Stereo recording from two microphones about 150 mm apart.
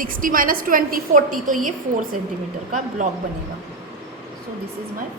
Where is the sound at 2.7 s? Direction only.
55° right (ahead or behind).